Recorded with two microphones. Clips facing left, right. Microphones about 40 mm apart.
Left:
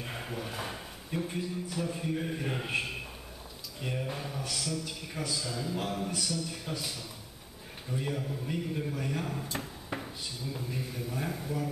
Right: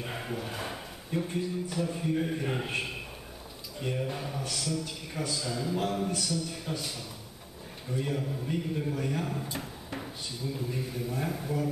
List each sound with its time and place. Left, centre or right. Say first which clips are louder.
0.0 s speech: right 2 dB; centre